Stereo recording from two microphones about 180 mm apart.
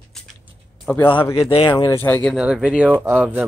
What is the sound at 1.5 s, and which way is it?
Speech, 30° left (ahead or behind).